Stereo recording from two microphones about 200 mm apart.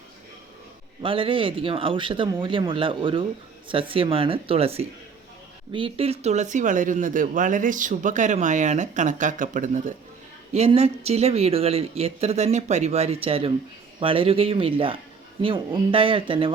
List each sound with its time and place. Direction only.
1.0 s speech: 25° right (ahead or behind)